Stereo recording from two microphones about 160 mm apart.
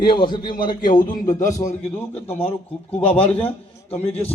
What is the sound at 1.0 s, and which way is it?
Speech, 55° left (ahead or behind).